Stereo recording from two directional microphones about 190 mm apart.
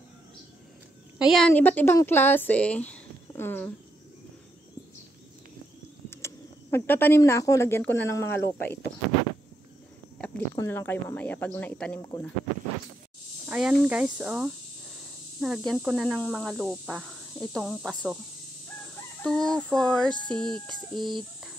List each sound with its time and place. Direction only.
1.1 s speech: centre (ahead or behind)
6.0 s speech: 10° left (ahead or behind)
10.1 s a sound: 5° left (ahead or behind)
10.6 s speech: 10° left (ahead or behind)
13.5 s speech: 5° right (ahead or behind)
19.2 s speech: 5° left (ahead or behind)
20.9 s speech: 25° right (ahead or behind)